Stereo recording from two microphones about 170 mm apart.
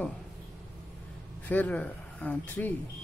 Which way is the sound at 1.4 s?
10° left (ahead or behind).